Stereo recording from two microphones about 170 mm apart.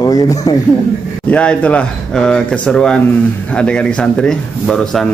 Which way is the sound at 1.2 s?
5° left (ahead or behind).